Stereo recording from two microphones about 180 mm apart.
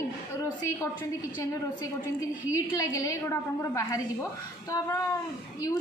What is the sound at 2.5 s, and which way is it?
A woman's voice, 20° left (ahead or behind).